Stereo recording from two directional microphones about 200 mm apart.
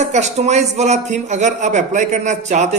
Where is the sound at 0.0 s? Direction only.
35° right (ahead or behind).